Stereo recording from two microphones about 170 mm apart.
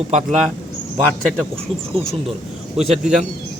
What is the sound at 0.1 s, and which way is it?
Speech, 45° right (ahead or behind).